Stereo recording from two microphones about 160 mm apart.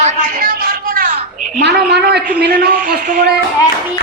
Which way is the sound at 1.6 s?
90° right.